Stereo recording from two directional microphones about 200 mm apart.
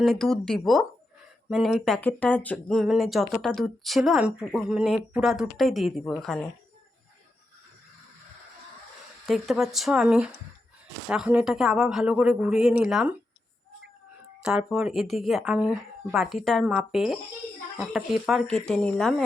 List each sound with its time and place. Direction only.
0.0 s speech: centre (ahead or behind)
9.2 s speech: centre (ahead or behind)
14.4 s speech: centre (ahead or behind)